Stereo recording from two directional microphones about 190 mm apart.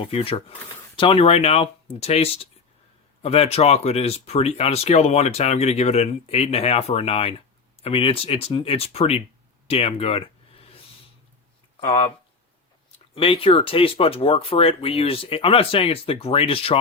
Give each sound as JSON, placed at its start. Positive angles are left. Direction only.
{"t": 0.0, "sound": "speech", "side_deg": 30}
{"t": 11.9, "sound": "speech", "side_deg": 35}
{"t": 13.1, "sound": "speech", "side_deg": 30}